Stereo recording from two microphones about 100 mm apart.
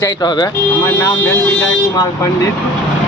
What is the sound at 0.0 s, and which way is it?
Speech, 45° left (ahead or behind).